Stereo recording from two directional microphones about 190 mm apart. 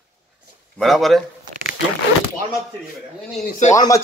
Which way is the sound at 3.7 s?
15° left (ahead or behind).